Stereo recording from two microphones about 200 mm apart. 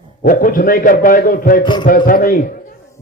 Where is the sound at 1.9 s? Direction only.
45° left (ahead or behind).